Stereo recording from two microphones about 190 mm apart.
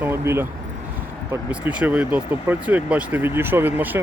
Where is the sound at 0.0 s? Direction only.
10° right (ahead or behind).